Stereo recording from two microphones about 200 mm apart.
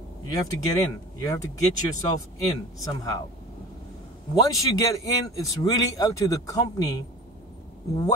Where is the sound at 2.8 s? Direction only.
15° left (ahead or behind).